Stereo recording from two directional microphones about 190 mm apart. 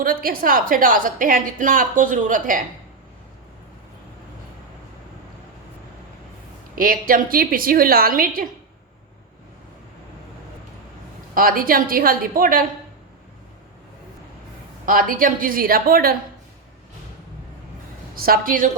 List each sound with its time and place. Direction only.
0.0 s a woman's voice: 50° right (ahead or behind)
6.7 s a woman's voice: 50° right (ahead or behind)
11.3 s a woman's voice: 50° right (ahead or behind)
14.8 s a woman's voice: 45° right (ahead or behind)
18.1 s a woman's voice: 50° right (ahead or behind)